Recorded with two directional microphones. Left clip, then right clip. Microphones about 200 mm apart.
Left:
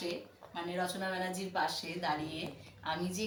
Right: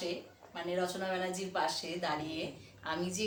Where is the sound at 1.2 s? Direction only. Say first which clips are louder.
Left 1 dB; 10° right (ahead or behind).